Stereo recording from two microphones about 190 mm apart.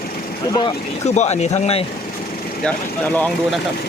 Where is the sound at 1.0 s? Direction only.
35° left (ahead or behind).